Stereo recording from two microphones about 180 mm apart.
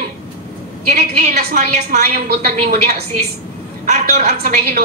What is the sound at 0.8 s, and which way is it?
A woman's voice, 50° right (ahead or behind).